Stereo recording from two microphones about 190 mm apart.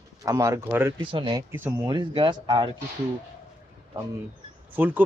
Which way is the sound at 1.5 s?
10° right (ahead or behind).